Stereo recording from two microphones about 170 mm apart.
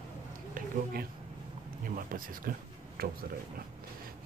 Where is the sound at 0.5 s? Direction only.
60° right (ahead or behind).